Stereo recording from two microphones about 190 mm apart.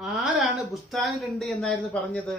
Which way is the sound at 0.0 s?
Centre (ahead or behind).